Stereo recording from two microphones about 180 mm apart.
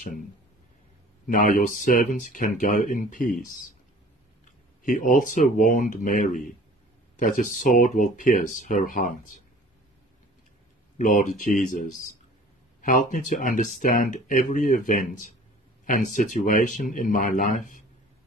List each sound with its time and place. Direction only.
1.2 s speech: 50° left (ahead or behind)
4.8 s speech: 45° left (ahead or behind)
11.0 s speech: 45° left (ahead or behind)